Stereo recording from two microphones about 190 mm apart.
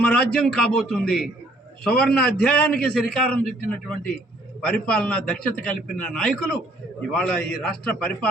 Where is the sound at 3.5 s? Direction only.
50° left (ahead or behind).